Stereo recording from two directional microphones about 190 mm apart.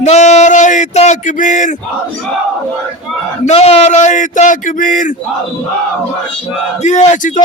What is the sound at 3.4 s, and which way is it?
Speech, 30° left (ahead or behind).